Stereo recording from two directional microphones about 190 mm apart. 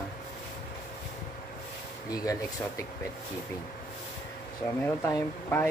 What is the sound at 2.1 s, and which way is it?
Speech, 20° left (ahead or behind).